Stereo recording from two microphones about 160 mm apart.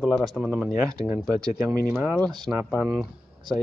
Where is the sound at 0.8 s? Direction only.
20° right (ahead or behind).